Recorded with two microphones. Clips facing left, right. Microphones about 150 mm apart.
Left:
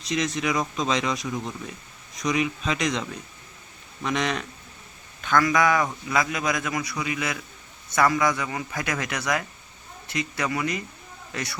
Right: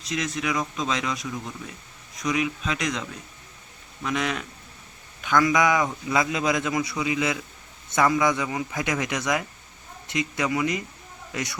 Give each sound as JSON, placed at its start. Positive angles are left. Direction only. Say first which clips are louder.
{"t": 0.0, "sound": "speech", "louder": "left 2 dB", "side_deg": 0}
{"t": 5.2, "sound": "a man's voice", "louder": "even", "side_deg": -15}